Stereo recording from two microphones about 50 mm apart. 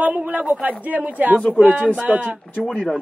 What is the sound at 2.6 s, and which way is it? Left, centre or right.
Speech, centre.